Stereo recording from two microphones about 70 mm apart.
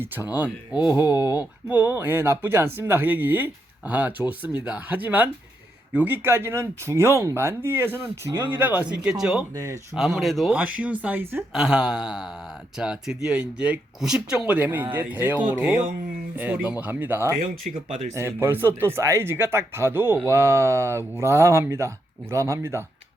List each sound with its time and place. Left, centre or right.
0.3 s mantra: centre
1.0 s speech: left
1.6 s speech: right
6.2 s speech: right; by 9.1 s centre
9.1 s mantra: centre
10.2 s speech: centre
10.5 s speech: centre
11.2 s speech: right
11.5 s mantra: centre
12.7 s speech: centre; by 17.2 s right
18.1 s speech: right
20.3 s speech: right